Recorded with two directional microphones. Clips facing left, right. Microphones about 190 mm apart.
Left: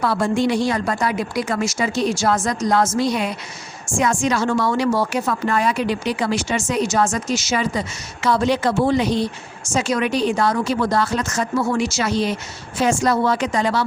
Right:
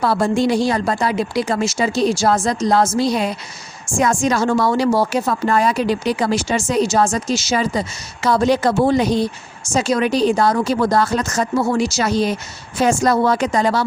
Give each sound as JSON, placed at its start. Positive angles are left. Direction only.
{"t": 0.0, "sound": "speech", "side_deg": -35}